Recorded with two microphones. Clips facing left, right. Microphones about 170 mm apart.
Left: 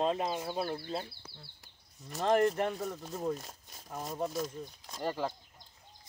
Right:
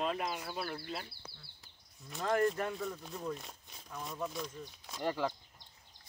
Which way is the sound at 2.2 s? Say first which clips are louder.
Left 4 dB; 20° left (ahead or behind).